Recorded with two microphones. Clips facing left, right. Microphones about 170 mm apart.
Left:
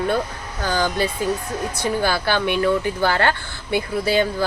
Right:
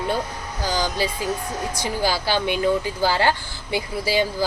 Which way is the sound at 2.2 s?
15° right (ahead or behind).